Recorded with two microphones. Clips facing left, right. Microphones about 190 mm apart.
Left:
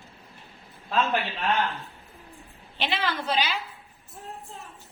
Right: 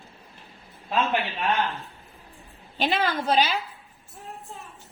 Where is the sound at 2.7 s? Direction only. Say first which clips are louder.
Right 4 dB; 45° right (ahead or behind).